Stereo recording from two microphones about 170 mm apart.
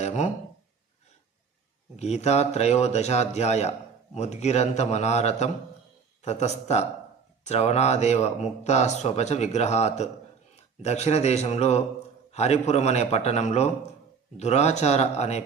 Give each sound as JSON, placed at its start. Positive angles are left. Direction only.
{"t": 0.0, "sound": "speech", "side_deg": 40}
{"t": 2.0, "sound": "speech", "side_deg": 40}